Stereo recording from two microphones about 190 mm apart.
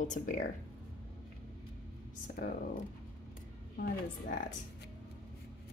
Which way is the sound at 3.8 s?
50° left (ahead or behind).